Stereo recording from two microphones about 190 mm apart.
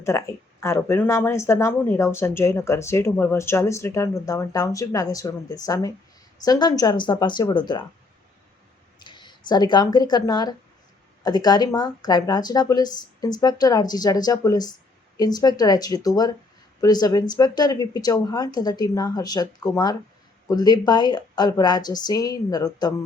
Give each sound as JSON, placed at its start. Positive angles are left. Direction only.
{"t": 0.0, "sound": "speech", "side_deg": 15}
{"t": 9.0, "sound": "speech", "side_deg": 25}